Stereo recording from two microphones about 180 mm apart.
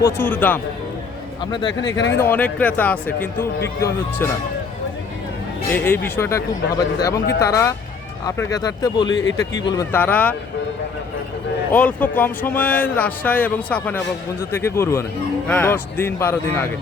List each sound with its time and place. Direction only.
0.0 s speech: 10° left (ahead or behind)
1.5 s speech: 25° left (ahead or behind)
1.9 s speech: 75° left (ahead or behind)
2.1 s speech: 10° left (ahead or behind)
5.7 s speech: 10° left (ahead or behind)
10.0 s speech: 10° left (ahead or behind)
11.7 s speech: 10° left (ahead or behind)